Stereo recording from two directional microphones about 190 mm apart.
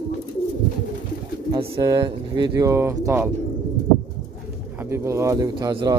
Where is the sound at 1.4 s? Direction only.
20° right (ahead or behind).